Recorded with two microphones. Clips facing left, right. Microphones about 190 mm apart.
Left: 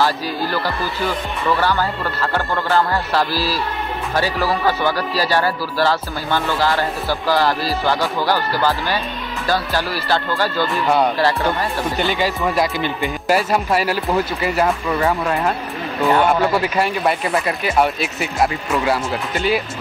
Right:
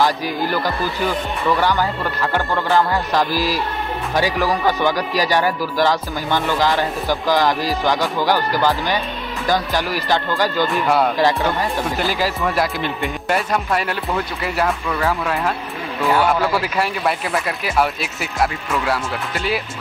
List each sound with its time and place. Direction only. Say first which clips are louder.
0.0 s speech: right 1 dB; 15° right (ahead or behind)
12.0 s speech: left 3 dB; centre (ahead or behind)